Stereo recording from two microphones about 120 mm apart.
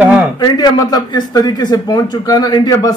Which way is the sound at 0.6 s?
35° left (ahead or behind).